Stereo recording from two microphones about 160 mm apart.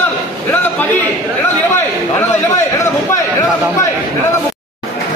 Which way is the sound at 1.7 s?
15° left (ahead or behind).